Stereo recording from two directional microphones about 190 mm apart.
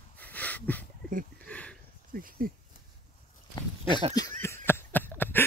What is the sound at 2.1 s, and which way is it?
Speech, 50° right (ahead or behind).